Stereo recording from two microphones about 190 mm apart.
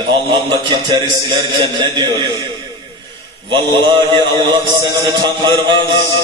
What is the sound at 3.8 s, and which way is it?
Speech, 25° right (ahead or behind).